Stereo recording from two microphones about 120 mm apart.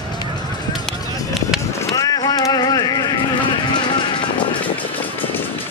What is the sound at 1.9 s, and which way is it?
Vehicle, 30° left (ahead or behind).